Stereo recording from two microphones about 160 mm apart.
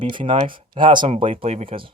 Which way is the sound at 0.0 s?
30° right (ahead or behind).